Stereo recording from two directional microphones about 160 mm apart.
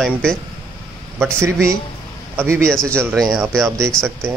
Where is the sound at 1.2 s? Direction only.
15° right (ahead or behind).